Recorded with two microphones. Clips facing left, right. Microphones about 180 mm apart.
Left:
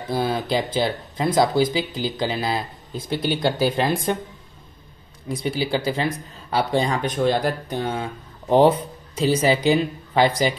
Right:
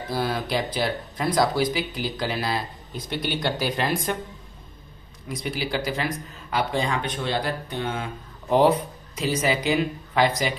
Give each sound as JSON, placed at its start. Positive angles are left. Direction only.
{"t": 0.1, "sound": "speech", "side_deg": 25}
{"t": 5.3, "sound": "speech", "side_deg": 30}